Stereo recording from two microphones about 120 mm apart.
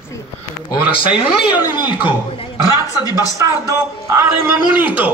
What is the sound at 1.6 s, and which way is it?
Speech, 40° left (ahead or behind).